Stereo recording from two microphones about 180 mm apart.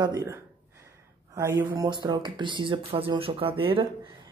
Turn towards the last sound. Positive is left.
turn(degrees=-30)  # may be behind; listen again after turning